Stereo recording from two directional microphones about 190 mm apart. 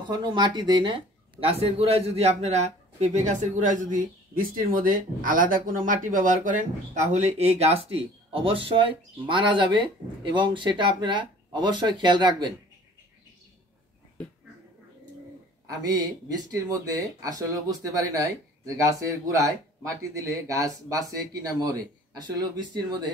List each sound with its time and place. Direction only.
0.1 s speech: 25° right (ahead or behind)
15.6 s speech: 20° right (ahead or behind)